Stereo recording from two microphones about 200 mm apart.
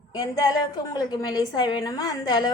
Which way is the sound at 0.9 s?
20° left (ahead or behind).